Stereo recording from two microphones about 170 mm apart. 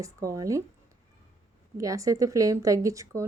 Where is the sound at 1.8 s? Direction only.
20° right (ahead or behind).